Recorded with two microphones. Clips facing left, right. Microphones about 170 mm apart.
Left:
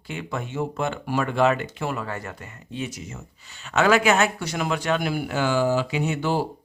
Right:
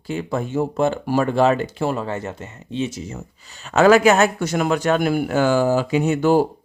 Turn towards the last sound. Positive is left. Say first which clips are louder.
# right 8 dB
turn(degrees=-45)  # may be behind; listen again after turning